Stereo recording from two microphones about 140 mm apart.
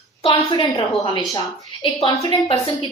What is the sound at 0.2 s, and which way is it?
A woman's voice, 35° left (ahead or behind).